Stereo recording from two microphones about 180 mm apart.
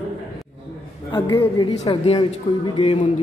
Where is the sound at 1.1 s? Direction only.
25° left (ahead or behind).